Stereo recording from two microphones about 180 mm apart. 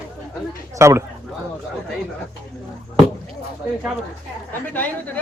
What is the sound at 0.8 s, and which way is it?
Speech, 15° right (ahead or behind).